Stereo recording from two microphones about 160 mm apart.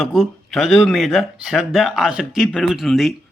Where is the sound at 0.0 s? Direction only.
Centre (ahead or behind).